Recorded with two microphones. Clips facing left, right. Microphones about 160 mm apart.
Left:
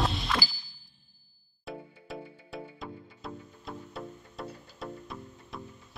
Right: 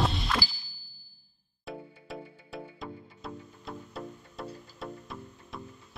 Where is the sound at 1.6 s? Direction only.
Centre (ahead or behind).